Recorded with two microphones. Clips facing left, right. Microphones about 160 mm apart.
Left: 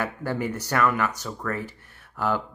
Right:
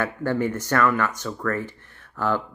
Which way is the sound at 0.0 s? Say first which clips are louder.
Right 4 dB; 10° left (ahead or behind).